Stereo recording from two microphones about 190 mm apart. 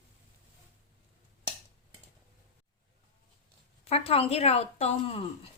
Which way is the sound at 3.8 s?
30° left (ahead or behind).